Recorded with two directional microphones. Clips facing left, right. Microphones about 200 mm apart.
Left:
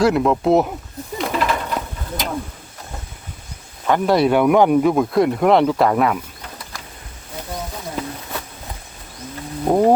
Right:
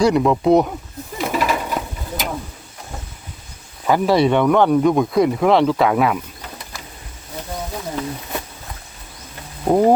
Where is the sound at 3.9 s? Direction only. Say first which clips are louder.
Even; centre (ahead or behind).